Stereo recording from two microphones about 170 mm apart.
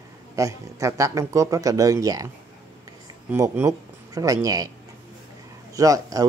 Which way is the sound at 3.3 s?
15° right (ahead or behind).